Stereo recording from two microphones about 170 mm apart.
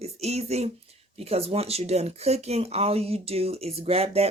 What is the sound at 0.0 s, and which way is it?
Speech, 40° right (ahead or behind).